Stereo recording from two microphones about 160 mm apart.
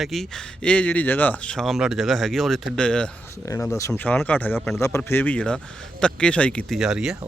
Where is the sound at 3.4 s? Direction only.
20° left (ahead or behind).